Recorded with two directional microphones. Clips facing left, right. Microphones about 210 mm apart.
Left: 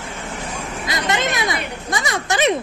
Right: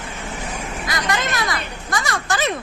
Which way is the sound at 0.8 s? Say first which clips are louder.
Left 3 dB; 25° left (ahead or behind).